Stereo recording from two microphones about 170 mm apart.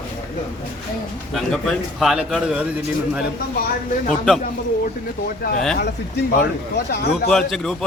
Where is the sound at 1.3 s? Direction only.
Centre (ahead or behind).